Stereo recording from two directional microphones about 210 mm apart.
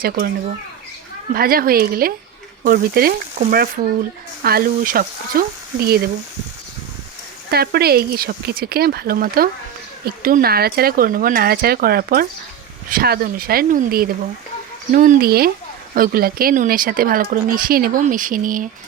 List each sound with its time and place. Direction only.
1.3 s speech: 45° right (ahead or behind)
7.5 s speech: 50° right (ahead or behind)